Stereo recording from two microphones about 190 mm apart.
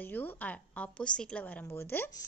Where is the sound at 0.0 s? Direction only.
10° left (ahead or behind).